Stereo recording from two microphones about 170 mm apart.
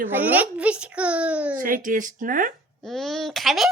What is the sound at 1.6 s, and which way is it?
Speech, 55° right (ahead or behind).